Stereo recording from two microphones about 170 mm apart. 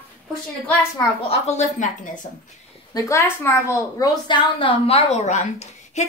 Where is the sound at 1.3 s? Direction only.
40° left (ahead or behind).